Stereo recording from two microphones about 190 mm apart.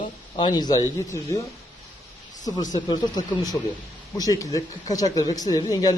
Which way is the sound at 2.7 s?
20° left (ahead or behind).